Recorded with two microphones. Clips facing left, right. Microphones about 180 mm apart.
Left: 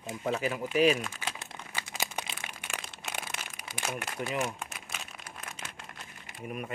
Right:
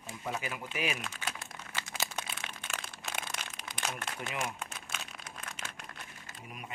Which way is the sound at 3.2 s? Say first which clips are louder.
Even; 5° left (ahead or behind).